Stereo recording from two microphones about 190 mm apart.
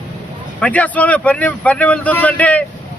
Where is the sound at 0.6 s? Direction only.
5° left (ahead or behind).